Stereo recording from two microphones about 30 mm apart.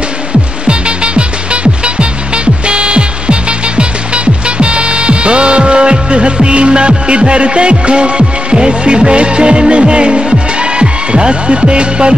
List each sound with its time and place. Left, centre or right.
0.7 s music: right